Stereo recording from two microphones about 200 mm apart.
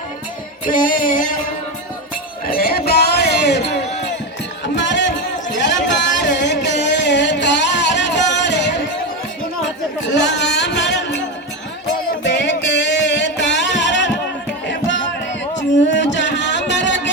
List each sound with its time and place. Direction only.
0.6 s music: 40° left (ahead or behind)
2.5 s a sound: 50° left (ahead or behind)
10.1 s music: 60° left (ahead or behind)
12.3 s music: 60° left (ahead or behind)
15.7 s a sound: 65° left (ahead or behind)
16.1 s music: 65° left (ahead or behind)